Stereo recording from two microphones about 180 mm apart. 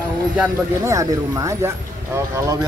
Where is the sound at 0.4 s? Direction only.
15° right (ahead or behind).